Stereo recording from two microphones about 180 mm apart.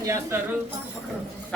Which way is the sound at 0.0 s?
15° right (ahead or behind).